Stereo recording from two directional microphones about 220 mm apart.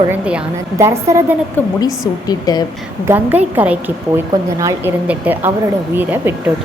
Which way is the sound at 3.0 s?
10° right (ahead or behind).